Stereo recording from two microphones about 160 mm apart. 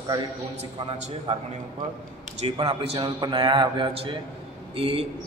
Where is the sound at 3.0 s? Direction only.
25° right (ahead or behind).